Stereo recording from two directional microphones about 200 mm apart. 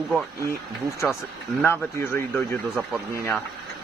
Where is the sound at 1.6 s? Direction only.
10° left (ahead or behind).